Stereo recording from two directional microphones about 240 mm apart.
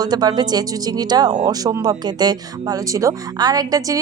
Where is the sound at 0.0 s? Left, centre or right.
Centre.